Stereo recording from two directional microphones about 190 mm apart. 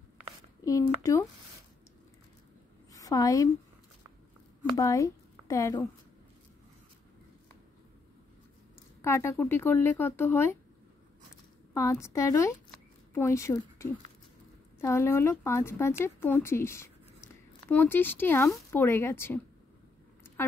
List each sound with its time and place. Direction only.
0.7 s speech: 15° left (ahead or behind)
2.9 s a sound: 20° left (ahead or behind)
4.7 s speech: 15° left (ahead or behind)
9.0 s speech: 15° left (ahead or behind)
11.7 s speech: 15° left (ahead or behind)